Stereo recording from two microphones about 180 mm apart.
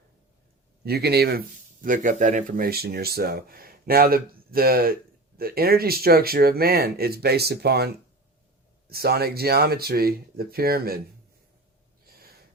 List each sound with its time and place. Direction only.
0.9 s speech: 65° right (ahead or behind)
1.8 s speech: 45° right (ahead or behind); by 7.9 s 65° right (ahead or behind)
8.9 s speech: 60° right (ahead or behind)